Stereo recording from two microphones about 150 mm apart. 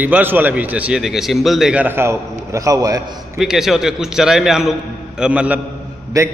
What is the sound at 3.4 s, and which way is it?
A man's voice, 5° right (ahead or behind).